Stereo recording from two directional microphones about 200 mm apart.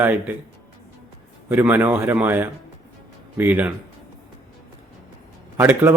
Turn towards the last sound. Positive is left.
turn(degrees=-10)  # may be behind; listen again after turning